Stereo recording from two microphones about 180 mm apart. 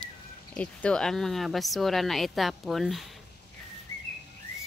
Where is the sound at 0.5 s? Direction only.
5° left (ahead or behind).